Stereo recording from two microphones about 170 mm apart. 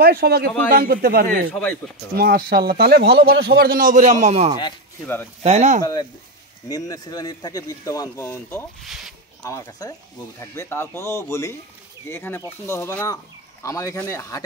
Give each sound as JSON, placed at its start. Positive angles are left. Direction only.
{"t": 0.0, "sound": "a man's voice", "side_deg": -60}
{"t": 1.5, "sound": "speech", "side_deg": 10}
{"t": 2.1, "sound": "a man's voice", "side_deg": -60}
{"t": 5.0, "sound": "speech", "side_deg": 10}
{"t": 5.4, "sound": "speech", "side_deg": -40}
{"t": 6.7, "sound": "speech", "side_deg": 20}
{"t": 8.8, "sound": "speech", "side_deg": 0}
{"t": 9.4, "sound": "speech", "side_deg": 15}